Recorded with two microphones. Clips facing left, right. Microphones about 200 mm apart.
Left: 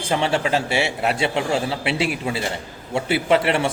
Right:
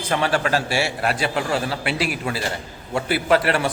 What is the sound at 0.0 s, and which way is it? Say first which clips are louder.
A man's voice: even; 25° left (ahead or behind).